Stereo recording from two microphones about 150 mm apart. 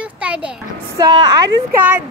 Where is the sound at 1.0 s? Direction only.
30° right (ahead or behind).